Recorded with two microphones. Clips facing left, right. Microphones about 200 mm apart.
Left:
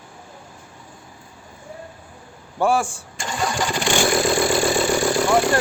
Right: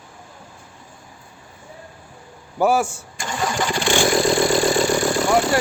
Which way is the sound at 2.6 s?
5° right (ahead or behind).